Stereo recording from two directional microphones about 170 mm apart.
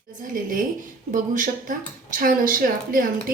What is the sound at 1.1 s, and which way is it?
A woman's voice, 50° right (ahead or behind).